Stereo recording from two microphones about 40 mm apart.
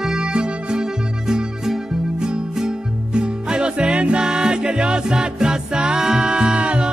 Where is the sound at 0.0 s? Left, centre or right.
Centre.